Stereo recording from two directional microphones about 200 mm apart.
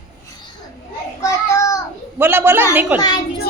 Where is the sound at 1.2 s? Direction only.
15° left (ahead or behind).